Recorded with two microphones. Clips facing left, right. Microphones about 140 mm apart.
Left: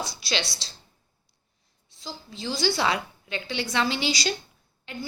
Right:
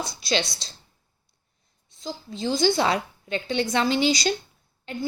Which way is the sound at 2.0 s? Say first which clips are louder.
Right 6 dB; 45° right (ahead or behind).